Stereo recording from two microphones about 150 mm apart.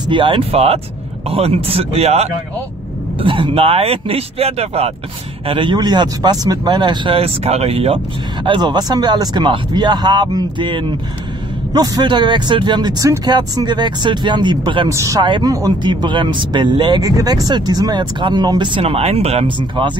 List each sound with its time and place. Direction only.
0.1 s speech: 35° right (ahead or behind)
5.5 s speech: 30° right (ahead or behind)
8.5 s speech: 30° right (ahead or behind)
14.9 s speech: 20° right (ahead or behind)